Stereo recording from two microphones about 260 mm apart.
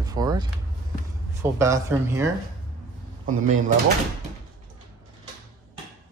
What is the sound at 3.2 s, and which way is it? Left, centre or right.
Speech, right.